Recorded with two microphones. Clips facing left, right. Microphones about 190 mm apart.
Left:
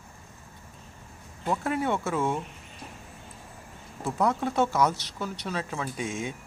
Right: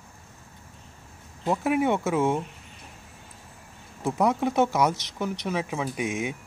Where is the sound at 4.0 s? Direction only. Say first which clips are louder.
Right 3 dB; 15° right (ahead or behind).